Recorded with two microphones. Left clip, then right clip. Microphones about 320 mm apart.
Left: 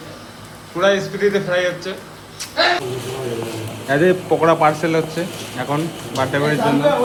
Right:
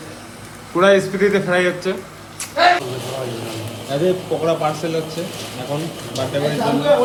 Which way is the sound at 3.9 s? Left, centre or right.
Centre.